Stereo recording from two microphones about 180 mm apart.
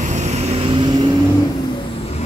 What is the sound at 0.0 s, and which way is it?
Vehicle, 40° right (ahead or behind).